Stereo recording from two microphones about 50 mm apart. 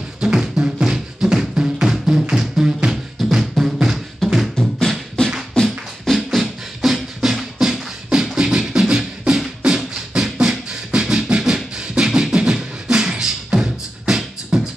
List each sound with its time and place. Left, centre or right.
0.2 s music: centre
4.6 s beatboxing: centre
5.2 s beatboxing: centre
6.1 s beatboxing: centre